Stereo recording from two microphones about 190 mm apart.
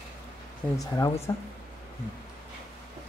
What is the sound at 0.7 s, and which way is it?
Speech, 20° left (ahead or behind).